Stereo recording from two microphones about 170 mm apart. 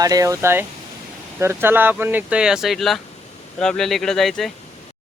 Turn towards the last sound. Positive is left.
turn(degrees=0)  # may be behind; listen again after turning